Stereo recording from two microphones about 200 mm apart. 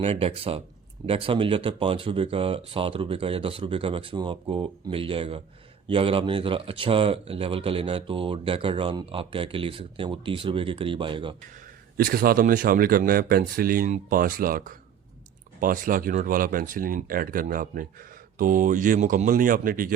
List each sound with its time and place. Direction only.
0.0 s speech: 30° right (ahead or behind)
11.9 s speech: 45° right (ahead or behind)